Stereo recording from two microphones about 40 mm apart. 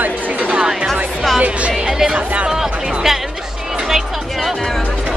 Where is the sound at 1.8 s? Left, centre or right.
Centre.